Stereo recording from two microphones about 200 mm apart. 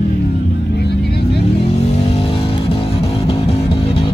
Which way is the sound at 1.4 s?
30° left (ahead or behind).